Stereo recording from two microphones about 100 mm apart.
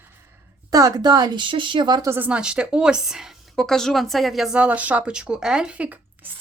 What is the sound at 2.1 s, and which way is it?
Speech, 15° right (ahead or behind).